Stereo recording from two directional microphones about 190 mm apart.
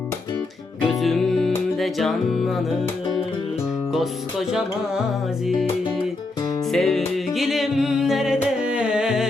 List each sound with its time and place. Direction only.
0.9 s music: centre (ahead or behind)
3.9 s music: centre (ahead or behind)
6.7 s music: centre (ahead or behind)